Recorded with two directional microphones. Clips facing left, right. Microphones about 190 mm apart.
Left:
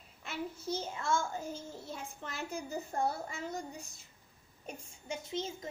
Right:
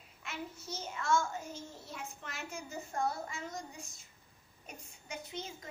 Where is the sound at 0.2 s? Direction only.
30° left (ahead or behind).